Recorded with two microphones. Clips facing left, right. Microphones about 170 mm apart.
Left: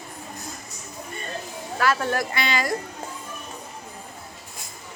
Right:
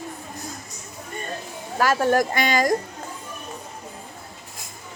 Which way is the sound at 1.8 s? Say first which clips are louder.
Right 4 dB; 40° right (ahead or behind).